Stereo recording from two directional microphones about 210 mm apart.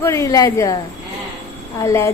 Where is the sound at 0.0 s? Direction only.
15° left (ahead or behind).